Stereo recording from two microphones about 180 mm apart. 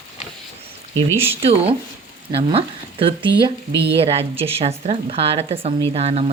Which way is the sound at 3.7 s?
70° right (ahead or behind).